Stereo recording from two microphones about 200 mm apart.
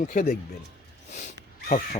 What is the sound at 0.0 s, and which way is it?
Speech, 40° left (ahead or behind).